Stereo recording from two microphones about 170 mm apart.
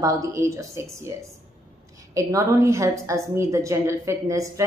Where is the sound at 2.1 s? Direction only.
20° right (ahead or behind).